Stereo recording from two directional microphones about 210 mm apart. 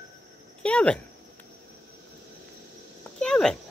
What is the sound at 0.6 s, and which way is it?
Speech, 5° left (ahead or behind).